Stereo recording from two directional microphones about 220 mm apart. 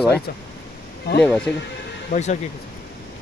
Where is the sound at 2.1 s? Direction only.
30° left (ahead or behind).